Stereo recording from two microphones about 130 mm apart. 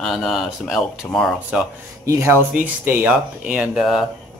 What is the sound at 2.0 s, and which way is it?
Speech, 20° right (ahead or behind).